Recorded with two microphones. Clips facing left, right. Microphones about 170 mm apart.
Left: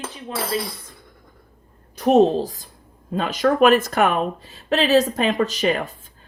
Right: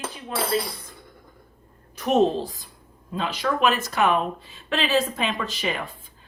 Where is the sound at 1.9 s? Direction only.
35° left (ahead or behind).